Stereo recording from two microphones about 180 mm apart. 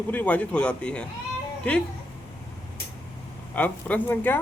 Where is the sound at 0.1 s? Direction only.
10° left (ahead or behind).